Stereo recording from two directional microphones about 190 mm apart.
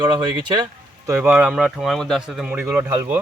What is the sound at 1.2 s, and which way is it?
Speech, 5° right (ahead or behind).